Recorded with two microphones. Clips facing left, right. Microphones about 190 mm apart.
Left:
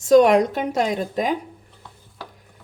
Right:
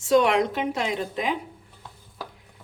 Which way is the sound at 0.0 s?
40° left (ahead or behind).